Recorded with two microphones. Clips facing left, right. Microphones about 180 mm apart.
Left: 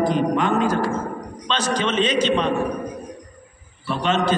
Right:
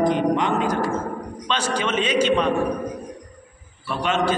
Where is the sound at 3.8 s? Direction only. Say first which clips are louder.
Left 1 dB; 10° right (ahead or behind).